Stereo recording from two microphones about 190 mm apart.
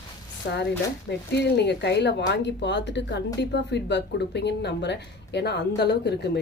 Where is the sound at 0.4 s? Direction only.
55° left (ahead or behind).